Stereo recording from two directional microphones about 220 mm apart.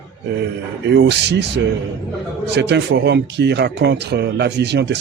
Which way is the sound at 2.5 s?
50° right (ahead or behind).